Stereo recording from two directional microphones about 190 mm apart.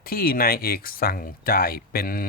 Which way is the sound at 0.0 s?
50° left (ahead or behind).